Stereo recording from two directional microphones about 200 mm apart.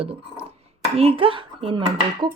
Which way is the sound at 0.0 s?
30° right (ahead or behind).